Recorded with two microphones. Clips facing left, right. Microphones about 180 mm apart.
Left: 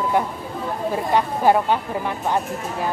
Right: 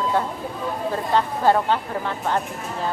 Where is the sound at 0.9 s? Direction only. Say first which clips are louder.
Left 2 dB; 15° left (ahead or behind).